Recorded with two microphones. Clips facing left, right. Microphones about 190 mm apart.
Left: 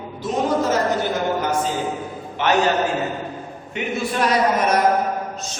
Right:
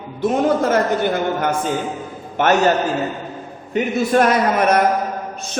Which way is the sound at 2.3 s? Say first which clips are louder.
Right 4 dB; 50° right (ahead or behind).